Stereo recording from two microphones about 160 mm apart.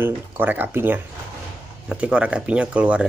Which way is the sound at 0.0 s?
10° right (ahead or behind).